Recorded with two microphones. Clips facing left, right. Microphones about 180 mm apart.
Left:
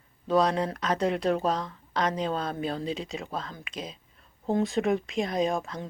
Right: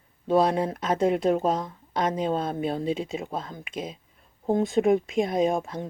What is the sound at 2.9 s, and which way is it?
Speech, 55° right (ahead or behind).